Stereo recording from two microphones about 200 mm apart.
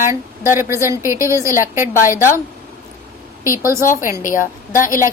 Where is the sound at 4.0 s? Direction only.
15° right (ahead or behind).